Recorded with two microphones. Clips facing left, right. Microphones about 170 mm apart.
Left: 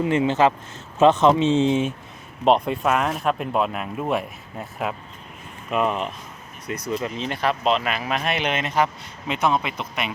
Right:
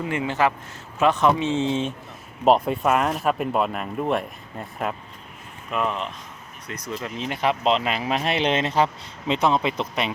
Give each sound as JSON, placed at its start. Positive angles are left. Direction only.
{"t": 0.0, "sound": "speech", "side_deg": 20}
{"t": 2.4, "sound": "speech", "side_deg": 0}
{"t": 7.4, "sound": "a man's voice", "side_deg": -20}